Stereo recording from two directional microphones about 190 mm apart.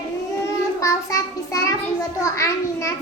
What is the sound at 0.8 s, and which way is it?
A child's voice, 15° left (ahead or behind).